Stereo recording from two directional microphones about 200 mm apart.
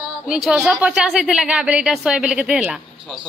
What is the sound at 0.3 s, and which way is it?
Speech, 5° right (ahead or behind).